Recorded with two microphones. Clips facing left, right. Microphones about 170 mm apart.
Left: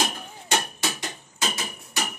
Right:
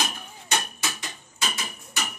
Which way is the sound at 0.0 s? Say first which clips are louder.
Left 3 dB; 30° left (ahead or behind).